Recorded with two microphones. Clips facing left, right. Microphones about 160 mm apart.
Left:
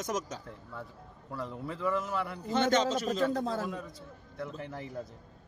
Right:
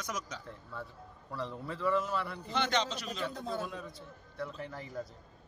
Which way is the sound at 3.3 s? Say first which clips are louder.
Left 6 dB; 90° left.